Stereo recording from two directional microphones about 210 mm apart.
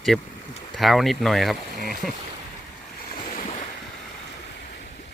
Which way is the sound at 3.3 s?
40° left (ahead or behind).